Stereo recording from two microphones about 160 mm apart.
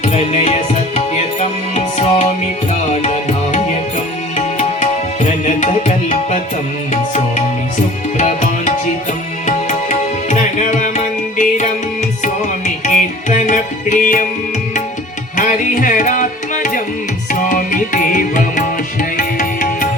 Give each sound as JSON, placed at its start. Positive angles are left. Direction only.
{"t": 0.0, "sound": "music", "side_deg": 45}
{"t": 4.4, "sound": "tabla", "side_deg": 45}
{"t": 6.9, "sound": "music", "side_deg": 45}
{"t": 9.5, "sound": "tabla", "side_deg": 50}
{"t": 12.2, "sound": "music", "side_deg": 50}
{"t": 15.4, "sound": "music", "side_deg": 55}